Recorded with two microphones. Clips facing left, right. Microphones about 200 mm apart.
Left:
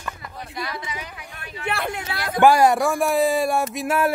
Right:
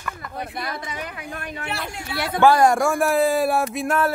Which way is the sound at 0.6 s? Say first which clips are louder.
Right 1 dB; 50° right (ahead or behind).